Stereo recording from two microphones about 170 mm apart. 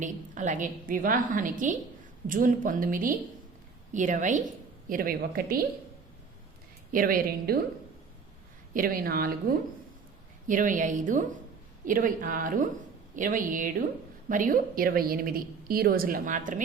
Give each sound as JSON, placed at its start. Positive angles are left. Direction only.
{"t": 0.0, "sound": "a woman's voice", "side_deg": -45}
{"t": 6.9, "sound": "a woman's voice", "side_deg": -55}
{"t": 8.7, "sound": "a woman's voice", "side_deg": -55}
{"t": 10.4, "sound": "a woman's voice", "side_deg": -50}